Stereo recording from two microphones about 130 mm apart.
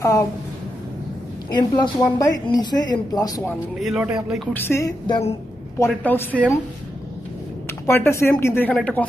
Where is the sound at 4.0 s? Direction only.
5° right (ahead or behind).